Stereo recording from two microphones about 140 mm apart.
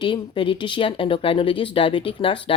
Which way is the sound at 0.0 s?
35° left (ahead or behind).